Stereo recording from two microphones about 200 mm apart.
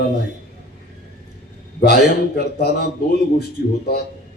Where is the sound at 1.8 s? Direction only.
50° left (ahead or behind).